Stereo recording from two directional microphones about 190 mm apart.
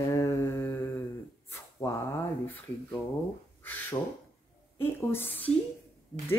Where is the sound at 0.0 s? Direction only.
15° left (ahead or behind).